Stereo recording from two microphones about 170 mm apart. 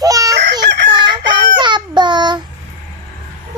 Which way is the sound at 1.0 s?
25° right (ahead or behind).